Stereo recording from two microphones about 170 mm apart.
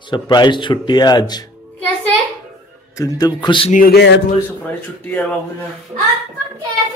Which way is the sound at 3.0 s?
20° left (ahead or behind).